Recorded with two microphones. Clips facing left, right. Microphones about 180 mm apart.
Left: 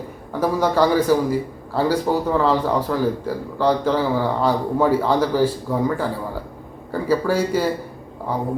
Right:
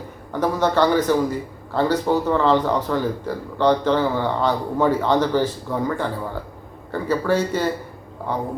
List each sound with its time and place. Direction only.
0.3 s a man's voice: 10° left (ahead or behind)
6.9 s a man's voice: 10° left (ahead or behind)